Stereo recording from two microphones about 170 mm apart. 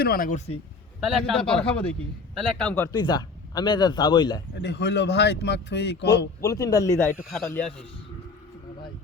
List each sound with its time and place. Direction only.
0.0 s speech: 60° left (ahead or behind); by 0.6 s 40° left (ahead or behind)
1.5 s a man's voice: 5° left (ahead or behind)
2.9 s speech: 25° left (ahead or behind)
4.5 s speech: 90° left
6.4 s speech: 20° left (ahead or behind)
7.2 s a man's voice: centre (ahead or behind)